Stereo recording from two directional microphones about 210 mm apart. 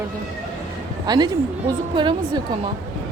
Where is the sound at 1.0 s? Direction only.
20° right (ahead or behind).